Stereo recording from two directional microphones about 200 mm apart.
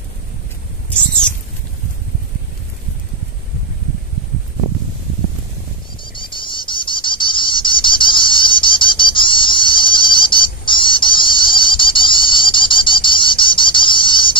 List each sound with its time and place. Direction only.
6.0 s cricket: 25° left (ahead or behind)